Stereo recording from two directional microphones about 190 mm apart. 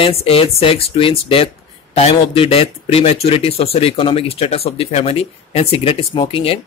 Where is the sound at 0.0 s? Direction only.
30° left (ahead or behind).